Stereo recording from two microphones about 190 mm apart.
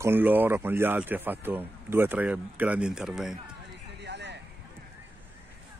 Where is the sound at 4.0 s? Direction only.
65° right (ahead or behind).